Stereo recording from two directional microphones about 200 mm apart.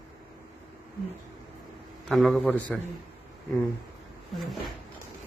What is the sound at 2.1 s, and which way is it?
Speech, centre (ahead or behind).